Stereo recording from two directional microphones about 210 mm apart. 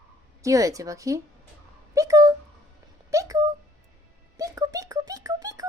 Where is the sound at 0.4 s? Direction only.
15° right (ahead or behind).